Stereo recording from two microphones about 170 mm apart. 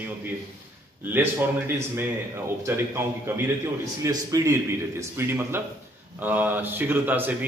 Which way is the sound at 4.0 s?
20° right (ahead or behind).